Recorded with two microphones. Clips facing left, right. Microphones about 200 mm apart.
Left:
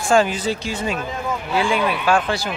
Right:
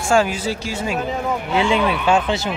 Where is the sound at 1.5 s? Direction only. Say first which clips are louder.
Right 2 dB; 20° right (ahead or behind).